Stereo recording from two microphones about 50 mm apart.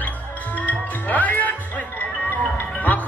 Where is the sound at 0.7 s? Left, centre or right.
Left.